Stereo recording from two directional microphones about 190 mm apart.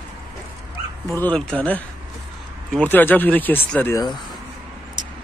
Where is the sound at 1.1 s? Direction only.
5° left (ahead or behind).